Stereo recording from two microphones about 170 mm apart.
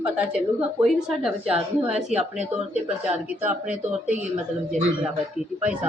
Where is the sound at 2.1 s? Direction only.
40° right (ahead or behind).